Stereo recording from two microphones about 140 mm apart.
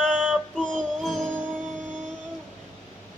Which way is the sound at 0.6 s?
5° left (ahead or behind).